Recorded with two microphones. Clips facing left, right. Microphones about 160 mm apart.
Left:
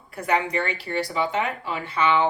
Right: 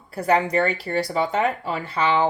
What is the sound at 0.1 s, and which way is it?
A woman's voice, 35° right (ahead or behind).